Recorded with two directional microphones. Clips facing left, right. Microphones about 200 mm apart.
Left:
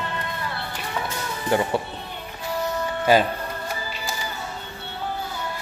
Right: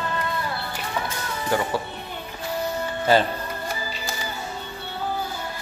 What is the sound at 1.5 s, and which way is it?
Speech, 25° left (ahead or behind).